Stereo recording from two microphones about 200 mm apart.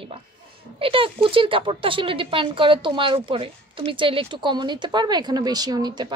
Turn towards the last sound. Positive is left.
turn(degrees=-20)  # may be behind; listen again after turning